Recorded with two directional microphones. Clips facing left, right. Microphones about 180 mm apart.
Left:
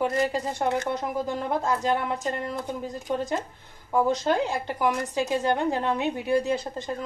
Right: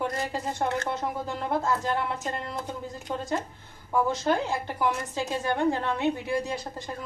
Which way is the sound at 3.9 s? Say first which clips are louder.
Left 2 dB; 20° left (ahead or behind).